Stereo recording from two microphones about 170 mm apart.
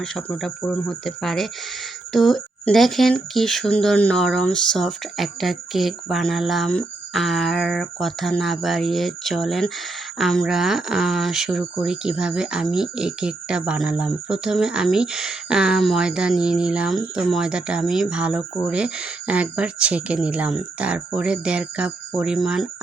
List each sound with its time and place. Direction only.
0.0 s speech: 5° left (ahead or behind)